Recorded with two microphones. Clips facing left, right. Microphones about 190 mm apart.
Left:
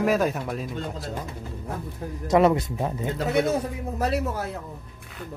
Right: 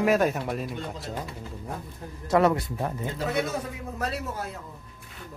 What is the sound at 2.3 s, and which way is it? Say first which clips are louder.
Speech: left 3 dB; 20° left (ahead or behind).